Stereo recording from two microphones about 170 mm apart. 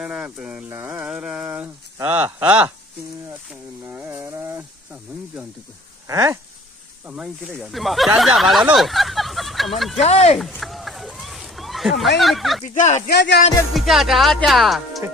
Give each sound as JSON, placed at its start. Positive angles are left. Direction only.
{"t": 0.0, "sound": "speech", "side_deg": -5}
{"t": 0.7, "sound": "a sound", "side_deg": -15}
{"t": 3.9, "sound": "a sound", "side_deg": -10}
{"t": 6.0, "sound": "speech", "side_deg": -20}
{"t": 7.1, "sound": "speech", "side_deg": -5}
{"t": 9.9, "sound": "speech", "side_deg": 40}
{"t": 10.6, "sound": "a sound", "side_deg": 0}
{"t": 12.2, "sound": "speech", "side_deg": 0}
{"t": 12.7, "sound": "speech", "side_deg": 45}
{"t": 13.1, "sound": "music", "side_deg": 85}
{"t": 13.7, "sound": "speech", "side_deg": 0}